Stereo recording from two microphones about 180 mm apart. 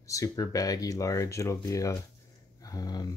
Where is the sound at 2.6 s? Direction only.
20° left (ahead or behind).